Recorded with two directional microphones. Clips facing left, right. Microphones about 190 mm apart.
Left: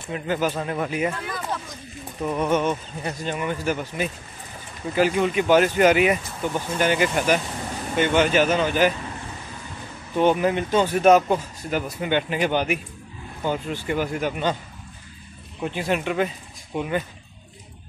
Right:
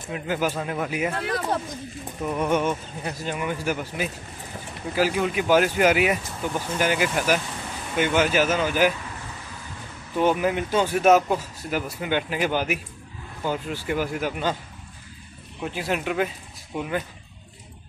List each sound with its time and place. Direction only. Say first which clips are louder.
0.1 s speech: left 1 dB; 10° right (ahead or behind)
1.1 s speech: right 4 dB; 65° right (ahead or behind)
2.2 s a man's voice: left 1 dB; 10° right (ahead or behind)
10.1 s speech: left 2 dB; 5° right (ahead or behind)
15.6 s speech: left 2 dB; 5° right (ahead or behind)